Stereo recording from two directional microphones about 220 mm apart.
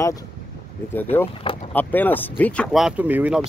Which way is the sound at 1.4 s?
25° left (ahead or behind).